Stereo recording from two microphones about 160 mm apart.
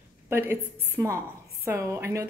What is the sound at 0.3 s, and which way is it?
A woman's voice, 15° right (ahead or behind).